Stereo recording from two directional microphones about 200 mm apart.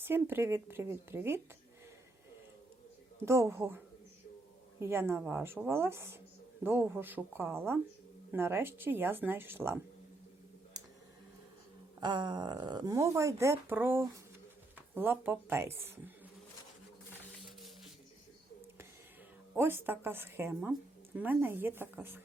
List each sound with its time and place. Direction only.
0.0 s speech: 10° right (ahead or behind)
3.2 s speech: 15° right (ahead or behind)
4.8 s speech: 10° right (ahead or behind)
11.9 s speech: 20° right (ahead or behind)
19.5 s speech: 10° right (ahead or behind)